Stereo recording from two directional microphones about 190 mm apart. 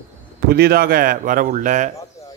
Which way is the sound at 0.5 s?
55° right (ahead or behind).